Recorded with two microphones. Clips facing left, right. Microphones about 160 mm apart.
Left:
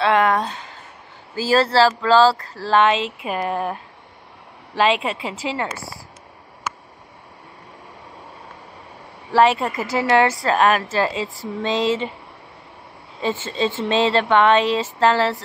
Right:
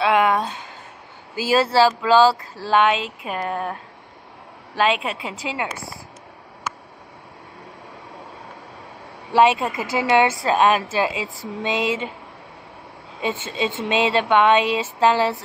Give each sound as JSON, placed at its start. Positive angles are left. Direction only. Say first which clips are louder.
{"t": 0.0, "sound": "a sound", "louder": "left 1 dB", "side_deg": -5}
{"t": 1.5, "sound": "speech", "louder": "left 1 dB", "side_deg": -20}
{"t": 2.3, "sound": "speech", "louder": "left 1 dB", "side_deg": -5}
{"t": 4.7, "sound": "speech", "louder": "left 2 dB", "side_deg": 0}
{"t": 9.3, "sound": "speech", "louder": "even", "side_deg": -15}
{"t": 13.3, "sound": "speech", "louder": "left 3 dB", "side_deg": -15}